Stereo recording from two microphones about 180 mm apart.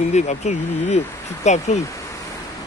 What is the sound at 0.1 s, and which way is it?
Speech, 40° left (ahead or behind).